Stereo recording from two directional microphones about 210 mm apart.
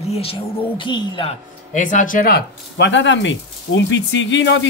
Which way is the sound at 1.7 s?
35° left (ahead or behind).